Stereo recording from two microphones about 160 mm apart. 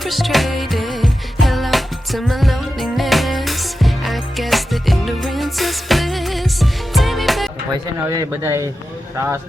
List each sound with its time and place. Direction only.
0.0 s music: centre (ahead or behind)
7.9 s speech: 20° right (ahead or behind)